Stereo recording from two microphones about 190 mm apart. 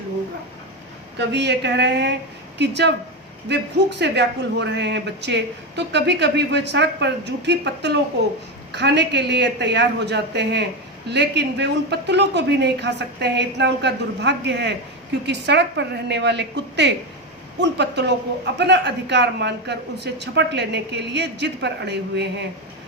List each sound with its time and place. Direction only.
1.2 s a woman's voice: 65° right (ahead or behind)